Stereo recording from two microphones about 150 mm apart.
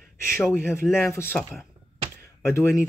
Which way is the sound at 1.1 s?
15° left (ahead or behind).